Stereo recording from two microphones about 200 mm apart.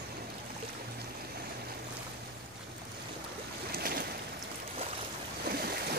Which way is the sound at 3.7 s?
50° right (ahead or behind).